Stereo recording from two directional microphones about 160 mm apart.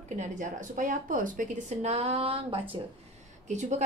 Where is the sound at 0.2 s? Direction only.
55° right (ahead or behind); by 2.6 s 35° right (ahead or behind).